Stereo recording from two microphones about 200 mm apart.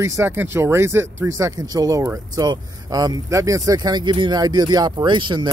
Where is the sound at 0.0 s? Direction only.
15° right (ahead or behind).